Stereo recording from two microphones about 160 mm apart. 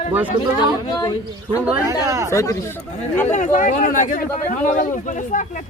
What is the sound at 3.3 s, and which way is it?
A man's voice, 50° left (ahead or behind).